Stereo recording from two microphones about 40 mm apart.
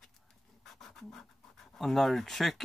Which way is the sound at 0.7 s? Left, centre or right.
Centre.